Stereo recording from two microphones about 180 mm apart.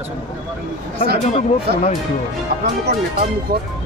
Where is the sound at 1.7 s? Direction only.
60° right (ahead or behind).